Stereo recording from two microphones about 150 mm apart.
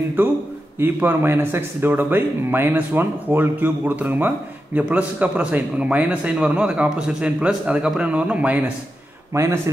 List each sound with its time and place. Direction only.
0.7 s speech: 15° right (ahead or behind)